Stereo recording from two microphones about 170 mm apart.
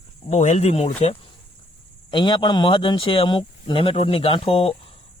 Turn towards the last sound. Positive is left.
turn(degrees=35)  # may be behind; listen again after turning